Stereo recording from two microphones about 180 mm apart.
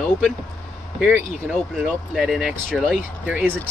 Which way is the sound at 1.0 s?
5° right (ahead or behind).